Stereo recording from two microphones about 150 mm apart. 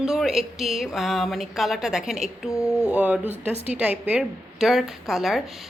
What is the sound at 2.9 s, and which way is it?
A woman's voice, 10° right (ahead or behind).